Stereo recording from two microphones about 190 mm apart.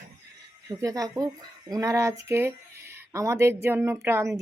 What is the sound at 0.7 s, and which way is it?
Speech, 15° right (ahead or behind).